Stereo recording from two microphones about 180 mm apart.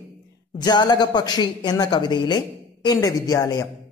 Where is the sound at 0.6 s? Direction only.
20° left (ahead or behind).